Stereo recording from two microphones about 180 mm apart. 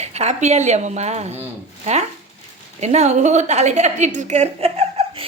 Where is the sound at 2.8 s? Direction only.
40° right (ahead or behind).